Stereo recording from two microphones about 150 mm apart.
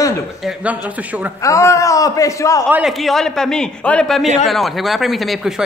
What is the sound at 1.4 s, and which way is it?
A man's voice, 20° left (ahead or behind).